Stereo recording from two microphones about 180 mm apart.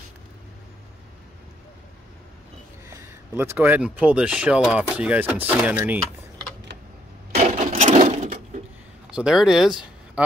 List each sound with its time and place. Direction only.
2.9 s speech: 15° right (ahead or behind)
7.3 s sewing machine: 40° right (ahead or behind)
9.1 s speech: 5° right (ahead or behind)